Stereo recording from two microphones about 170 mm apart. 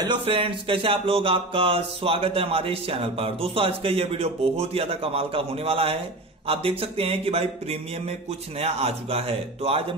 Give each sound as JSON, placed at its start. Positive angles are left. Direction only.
{"t": 0.0, "sound": "speech", "side_deg": -30}